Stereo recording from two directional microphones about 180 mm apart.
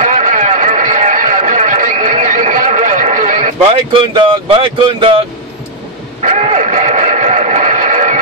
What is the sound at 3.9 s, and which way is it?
Speech, 30° right (ahead or behind).